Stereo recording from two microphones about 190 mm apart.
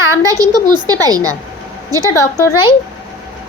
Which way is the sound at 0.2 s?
20° right (ahead or behind).